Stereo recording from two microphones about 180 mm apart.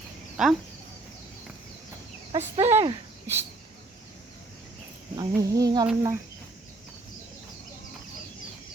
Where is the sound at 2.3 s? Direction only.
35° right (ahead or behind).